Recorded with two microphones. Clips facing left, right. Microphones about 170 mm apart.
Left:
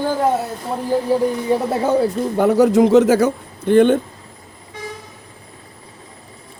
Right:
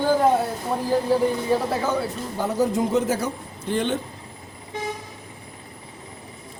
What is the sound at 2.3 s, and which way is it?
A man's voice, 70° left (ahead or behind).